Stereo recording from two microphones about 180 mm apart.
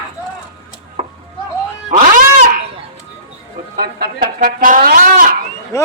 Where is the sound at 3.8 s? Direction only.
55° right (ahead or behind).